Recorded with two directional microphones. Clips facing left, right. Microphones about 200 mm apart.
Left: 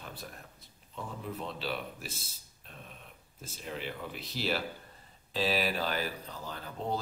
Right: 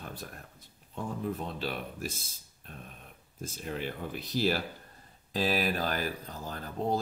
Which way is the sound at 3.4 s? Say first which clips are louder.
Right 4 dB; 45° right (ahead or behind).